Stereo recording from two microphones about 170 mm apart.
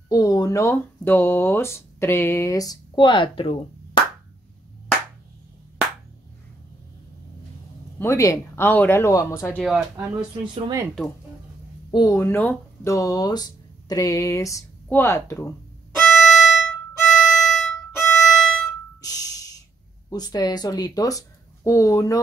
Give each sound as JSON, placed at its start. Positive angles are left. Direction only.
{"t": 0.1, "sound": "speech", "side_deg": 20}
{"t": 8.0, "sound": "speech", "side_deg": 15}
{"t": 9.6, "sound": "speech", "side_deg": 0}
{"t": 11.9, "sound": "speech", "side_deg": 25}
{"t": 12.2, "sound": "speech", "side_deg": 10}
{"t": 16.1, "sound": "violin", "side_deg": 0}
{"t": 18.9, "sound": "a sound", "side_deg": 20}
{"t": 20.1, "sound": "speech", "side_deg": 25}